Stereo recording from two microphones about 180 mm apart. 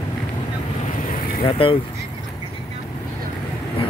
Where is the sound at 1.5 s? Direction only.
30° left (ahead or behind).